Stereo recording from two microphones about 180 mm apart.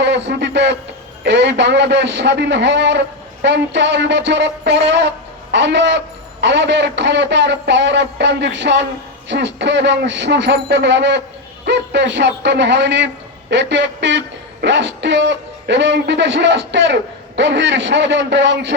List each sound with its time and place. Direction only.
0.0 s a man's voice: 75° right (ahead or behind)